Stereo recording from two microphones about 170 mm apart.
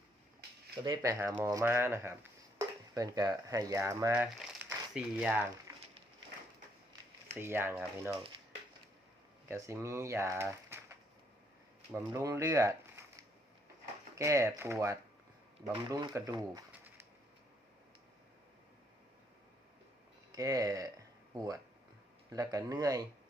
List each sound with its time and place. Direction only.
0.9 s speech: 15° right (ahead or behind)
4.1 s speech: 5° right (ahead or behind)
7.3 s speech: 15° right (ahead or behind)
9.5 s speech: 15° right (ahead or behind)
11.9 s speech: 20° right (ahead or behind)
14.2 s speech: 15° right (ahead or behind)
20.3 s speech: 20° right (ahead or behind)